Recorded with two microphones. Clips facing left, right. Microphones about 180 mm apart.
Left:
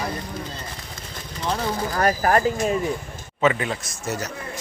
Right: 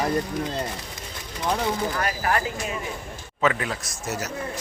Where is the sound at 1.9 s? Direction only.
40° left (ahead or behind).